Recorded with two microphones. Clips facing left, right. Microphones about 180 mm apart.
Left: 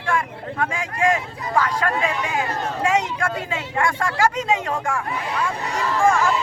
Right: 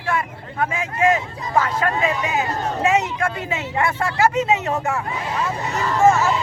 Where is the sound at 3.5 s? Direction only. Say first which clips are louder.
Right 1 dB; 10° right (ahead or behind).